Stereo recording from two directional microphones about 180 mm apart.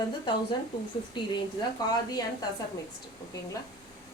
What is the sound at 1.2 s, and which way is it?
Speech, 25° left (ahead or behind).